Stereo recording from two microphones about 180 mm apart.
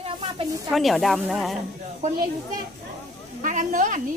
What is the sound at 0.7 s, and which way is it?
Speech, centre (ahead or behind).